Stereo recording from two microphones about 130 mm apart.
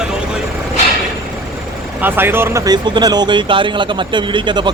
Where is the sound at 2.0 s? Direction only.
15° right (ahead or behind).